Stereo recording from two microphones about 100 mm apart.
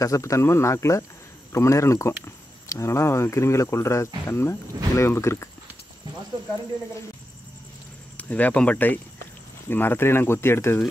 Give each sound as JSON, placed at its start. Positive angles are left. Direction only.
{"t": 0.0, "sound": "speech", "side_deg": 30}
{"t": 8.2, "sound": "speech", "side_deg": 15}